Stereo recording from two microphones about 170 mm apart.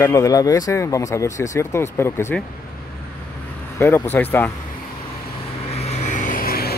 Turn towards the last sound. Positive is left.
turn(degrees=60)  # may be behind; listen again after turning